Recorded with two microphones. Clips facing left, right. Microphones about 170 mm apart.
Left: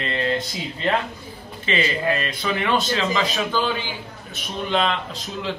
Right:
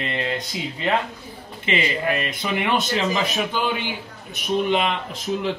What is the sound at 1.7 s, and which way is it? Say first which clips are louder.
Speech: even; 20° right (ahead or behind).